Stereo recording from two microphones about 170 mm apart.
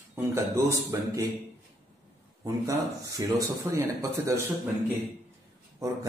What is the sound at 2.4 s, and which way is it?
Speech, 20° right (ahead or behind).